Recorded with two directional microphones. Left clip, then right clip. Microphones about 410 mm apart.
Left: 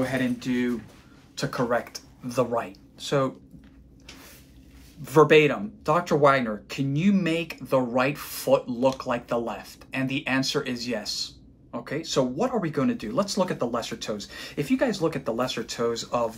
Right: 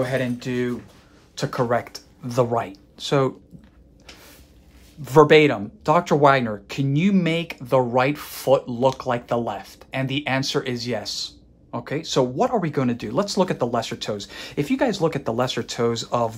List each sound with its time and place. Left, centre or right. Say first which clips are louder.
0.0 s speech: right 3 dB; right
5.0 s speech: right 4 dB; right